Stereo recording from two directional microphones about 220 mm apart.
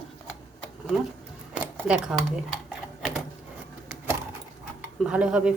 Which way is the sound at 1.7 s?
5° right (ahead or behind).